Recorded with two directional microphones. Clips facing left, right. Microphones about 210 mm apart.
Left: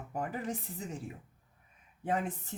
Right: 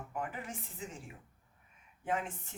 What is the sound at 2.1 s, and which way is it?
Speech, 35° left (ahead or behind).